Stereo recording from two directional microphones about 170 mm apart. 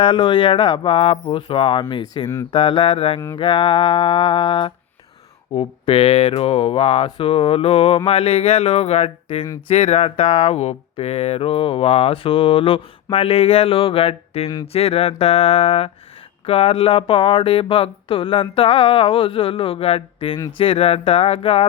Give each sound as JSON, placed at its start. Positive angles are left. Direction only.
{"t": 0.0, "sound": "speech", "side_deg": 30}